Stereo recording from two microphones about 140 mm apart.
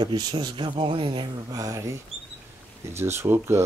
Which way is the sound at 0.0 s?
30° right (ahead or behind).